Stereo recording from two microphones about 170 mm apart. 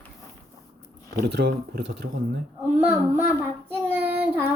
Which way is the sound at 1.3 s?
80° right.